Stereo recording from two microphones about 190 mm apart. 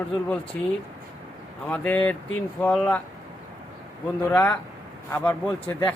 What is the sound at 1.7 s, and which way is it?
Speech, 5° left (ahead or behind).